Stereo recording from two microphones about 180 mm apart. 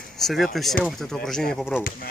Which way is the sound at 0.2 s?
Centre (ahead or behind).